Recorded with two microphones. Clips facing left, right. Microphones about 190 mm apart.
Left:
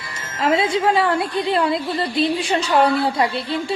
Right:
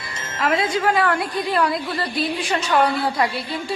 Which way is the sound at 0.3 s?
30° left (ahead or behind).